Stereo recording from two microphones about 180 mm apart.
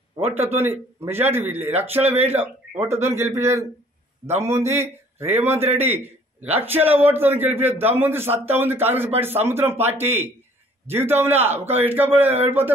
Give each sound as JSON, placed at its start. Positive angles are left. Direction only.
{"t": 0.4, "sound": "a man's voice", "side_deg": -10}